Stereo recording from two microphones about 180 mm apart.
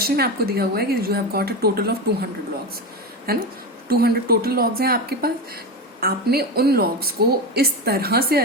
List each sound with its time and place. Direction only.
0.0 s speech: 60° right (ahead or behind)
3.3 s speech: 55° right (ahead or behind)